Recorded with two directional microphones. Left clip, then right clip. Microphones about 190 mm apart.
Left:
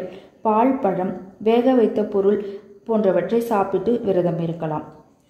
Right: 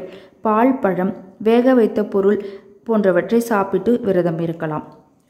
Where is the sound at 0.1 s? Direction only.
20° right (ahead or behind).